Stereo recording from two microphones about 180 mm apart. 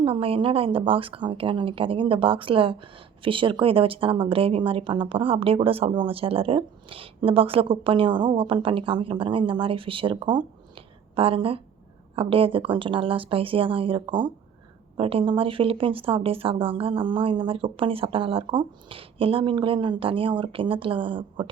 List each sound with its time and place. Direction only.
0.0 s a woman's voice: 30° right (ahead or behind)